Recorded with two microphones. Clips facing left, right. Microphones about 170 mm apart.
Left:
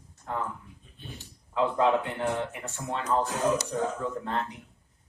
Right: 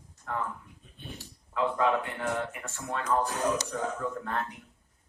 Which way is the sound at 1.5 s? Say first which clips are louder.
Left 3 dB; 20° left (ahead or behind).